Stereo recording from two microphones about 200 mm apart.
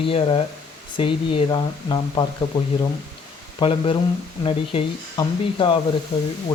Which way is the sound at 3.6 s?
25° left (ahead or behind).